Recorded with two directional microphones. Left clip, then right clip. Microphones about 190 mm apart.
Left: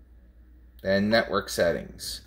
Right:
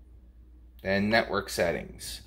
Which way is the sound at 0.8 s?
20° left (ahead or behind).